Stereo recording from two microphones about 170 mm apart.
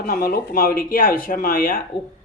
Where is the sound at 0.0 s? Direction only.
60° left (ahead or behind).